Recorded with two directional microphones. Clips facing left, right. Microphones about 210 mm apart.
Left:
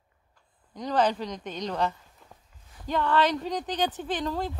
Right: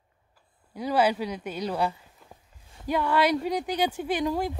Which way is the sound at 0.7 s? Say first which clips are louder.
Right 1 dB; 10° right (ahead or behind).